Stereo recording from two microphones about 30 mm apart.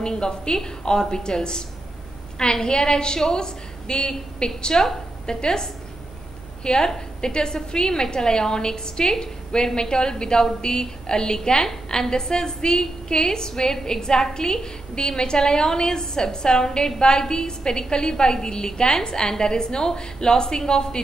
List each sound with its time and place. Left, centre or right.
0.0 s a woman's voice: left